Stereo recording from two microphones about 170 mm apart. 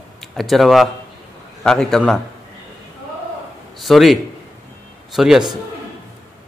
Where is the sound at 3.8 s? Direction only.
Centre (ahead or behind).